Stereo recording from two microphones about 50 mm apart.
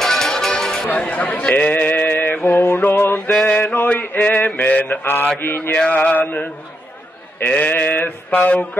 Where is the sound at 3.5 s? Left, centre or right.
Left.